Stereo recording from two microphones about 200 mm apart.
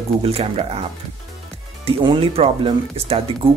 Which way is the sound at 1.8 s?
25° right (ahead or behind).